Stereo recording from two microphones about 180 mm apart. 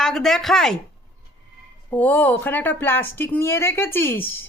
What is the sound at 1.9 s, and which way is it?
Speech, 10° left (ahead or behind).